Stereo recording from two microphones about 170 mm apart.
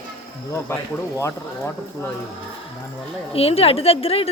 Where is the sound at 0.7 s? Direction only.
15° left (ahead or behind).